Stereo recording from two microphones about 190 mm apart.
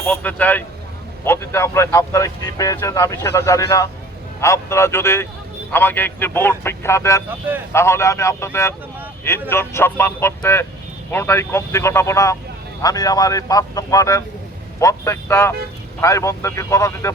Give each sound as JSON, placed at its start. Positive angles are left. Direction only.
{"t": 0.0, "sound": "speech", "side_deg": 5}
{"t": 7.3, "sound": "speech", "side_deg": -10}
{"t": 7.7, "sound": "speech", "side_deg": 15}